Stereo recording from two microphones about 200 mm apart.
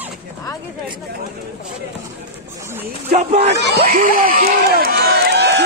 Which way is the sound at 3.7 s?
45° right (ahead or behind).